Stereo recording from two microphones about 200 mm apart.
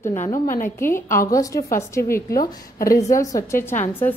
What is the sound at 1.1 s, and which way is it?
A woman's voice, 15° left (ahead or behind).